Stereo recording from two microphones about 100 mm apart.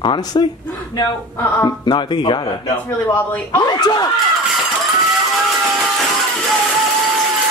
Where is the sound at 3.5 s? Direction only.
40° left (ahead or behind).